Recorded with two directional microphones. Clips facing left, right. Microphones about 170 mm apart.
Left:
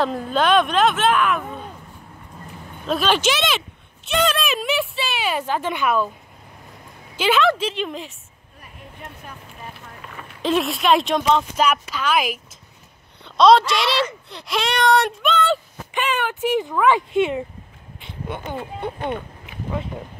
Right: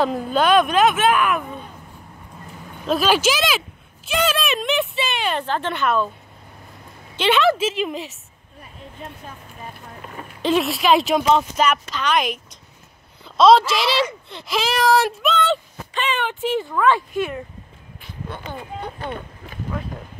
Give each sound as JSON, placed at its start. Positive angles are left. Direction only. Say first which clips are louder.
{"t": 0.0, "sound": "a child's voice", "louder": "right 1 dB", "side_deg": 0}
{"t": 2.9, "sound": "speech", "louder": "right 2 dB", "side_deg": -5}
{"t": 7.2, "sound": "a child's voice", "louder": "right 1 dB", "side_deg": 0}
{"t": 10.4, "sound": "a child's voice", "louder": "right 1 dB", "side_deg": 0}
{"t": 11.6, "sound": "a child's voice", "louder": "even", "side_deg": 10}
{"t": 17.1, "sound": "speech", "louder": "left 5 dB", "side_deg": 25}